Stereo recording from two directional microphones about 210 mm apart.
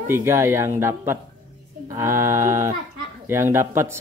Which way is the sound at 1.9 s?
10° right (ahead or behind).